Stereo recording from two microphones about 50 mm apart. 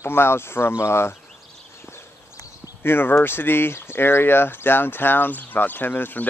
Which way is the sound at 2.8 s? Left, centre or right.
Left.